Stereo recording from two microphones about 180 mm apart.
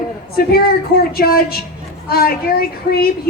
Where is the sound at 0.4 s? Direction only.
55° left (ahead or behind).